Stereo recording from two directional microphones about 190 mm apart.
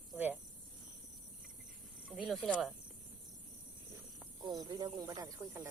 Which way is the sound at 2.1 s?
5° right (ahead or behind).